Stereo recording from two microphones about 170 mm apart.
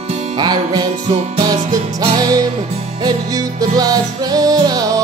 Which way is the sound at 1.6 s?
40° right (ahead or behind).